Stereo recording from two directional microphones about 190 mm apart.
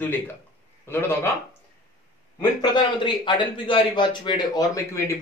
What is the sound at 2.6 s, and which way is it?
A man's voice, 25° left (ahead or behind).